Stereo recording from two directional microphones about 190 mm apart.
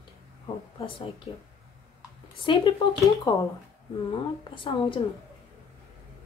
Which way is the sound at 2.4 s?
25° left (ahead or behind).